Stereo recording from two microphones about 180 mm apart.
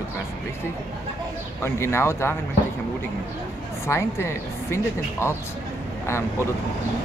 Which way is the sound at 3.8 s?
15° left (ahead or behind).